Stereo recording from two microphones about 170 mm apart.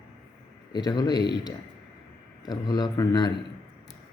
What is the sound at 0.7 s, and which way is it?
Speech, 25° left (ahead or behind).